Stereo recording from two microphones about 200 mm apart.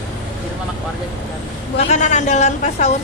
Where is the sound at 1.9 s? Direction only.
35° left (ahead or behind).